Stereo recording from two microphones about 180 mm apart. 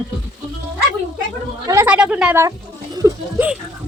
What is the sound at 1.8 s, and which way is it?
Speech, 5° right (ahead or behind).